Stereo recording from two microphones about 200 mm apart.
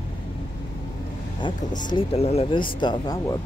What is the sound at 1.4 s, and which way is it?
Speech, 25° left (ahead or behind).